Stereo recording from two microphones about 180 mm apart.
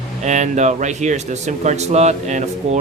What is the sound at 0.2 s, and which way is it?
A man's voice, 40° right (ahead or behind).